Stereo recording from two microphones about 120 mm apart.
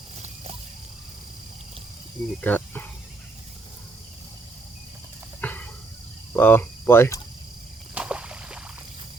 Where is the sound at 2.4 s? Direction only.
15° left (ahead or behind).